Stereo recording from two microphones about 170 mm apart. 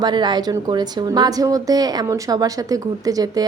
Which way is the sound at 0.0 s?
25° right (ahead or behind).